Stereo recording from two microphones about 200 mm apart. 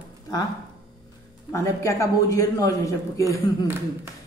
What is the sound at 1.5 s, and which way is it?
Speech, 15° left (ahead or behind).